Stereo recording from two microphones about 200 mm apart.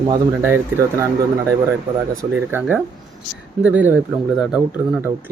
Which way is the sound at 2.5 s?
10° right (ahead or behind).